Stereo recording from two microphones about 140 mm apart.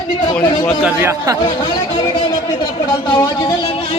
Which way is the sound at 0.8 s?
20° right (ahead or behind).